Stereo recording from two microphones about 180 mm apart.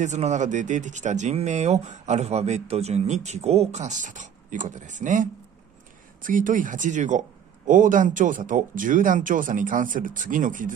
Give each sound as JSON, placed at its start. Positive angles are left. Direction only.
{"t": 0.0, "sound": "speech", "side_deg": -40}